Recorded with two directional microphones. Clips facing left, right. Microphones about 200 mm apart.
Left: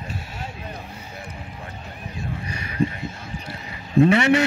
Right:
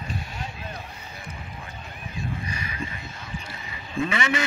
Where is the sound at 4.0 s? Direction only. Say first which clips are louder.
Left 10 dB; 65° left (ahead or behind).